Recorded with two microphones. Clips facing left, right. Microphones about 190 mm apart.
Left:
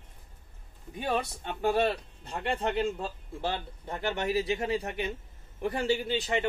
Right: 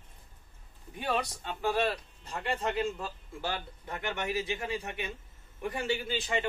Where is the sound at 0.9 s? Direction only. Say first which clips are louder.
Left 2 dB; 20° left (ahead or behind); by 5.1 s 35° left (ahead or behind).